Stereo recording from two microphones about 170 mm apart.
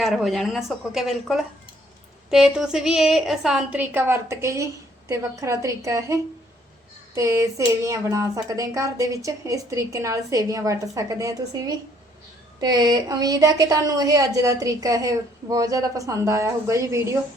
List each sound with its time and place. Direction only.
0.0 s a woman's voice: centre (ahead or behind); by 6.1 s 20° right (ahead or behind)
7.2 s a woman's voice: 20° right (ahead or behind)